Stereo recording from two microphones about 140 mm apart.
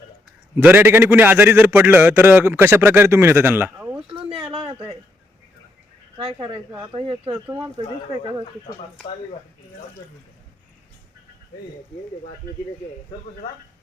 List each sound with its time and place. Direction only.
0.5 s a man's voice: 15° right (ahead or behind)
6.1 s speech: 40° right (ahead or behind)
7.3 s a man's voice: 15° right (ahead or behind)